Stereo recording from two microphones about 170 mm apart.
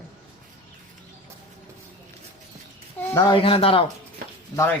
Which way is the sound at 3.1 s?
25° left (ahead or behind).